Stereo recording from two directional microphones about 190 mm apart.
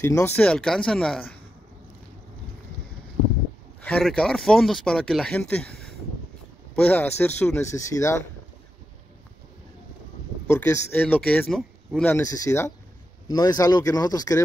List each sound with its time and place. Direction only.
0.0 s speech: 15° left (ahead or behind)
3.8 s speech: 5° left (ahead or behind)
10.4 s speech: 15° left (ahead or behind)